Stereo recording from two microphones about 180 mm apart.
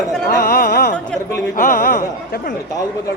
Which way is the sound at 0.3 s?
55° left (ahead or behind).